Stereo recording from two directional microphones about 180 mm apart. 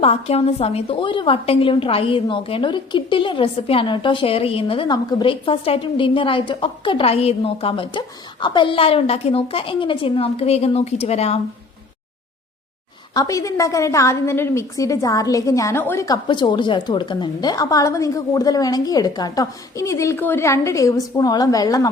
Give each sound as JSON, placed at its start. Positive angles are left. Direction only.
{"t": 0.0, "sound": "a woman's voice", "side_deg": 35}
{"t": 13.1, "sound": "a woman's voice", "side_deg": 20}